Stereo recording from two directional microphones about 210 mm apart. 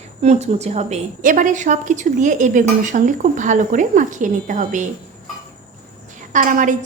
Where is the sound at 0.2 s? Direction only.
35° right (ahead or behind).